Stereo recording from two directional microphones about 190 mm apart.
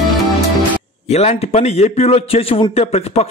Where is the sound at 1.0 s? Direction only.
35° left (ahead or behind).